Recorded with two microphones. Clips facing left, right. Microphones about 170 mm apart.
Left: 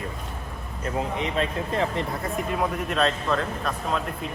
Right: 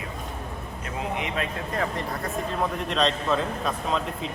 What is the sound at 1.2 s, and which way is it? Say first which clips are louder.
Speech: left 3 dB; 25° left (ahead or behind).